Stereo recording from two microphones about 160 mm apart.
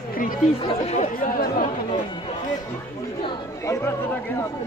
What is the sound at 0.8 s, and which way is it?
Chatter, 45° left (ahead or behind).